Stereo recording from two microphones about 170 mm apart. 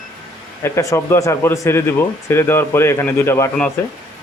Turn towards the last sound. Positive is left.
turn(degrees=15)  # may be behind; listen again after turning